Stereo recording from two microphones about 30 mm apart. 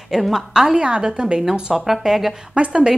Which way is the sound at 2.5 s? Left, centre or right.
Right.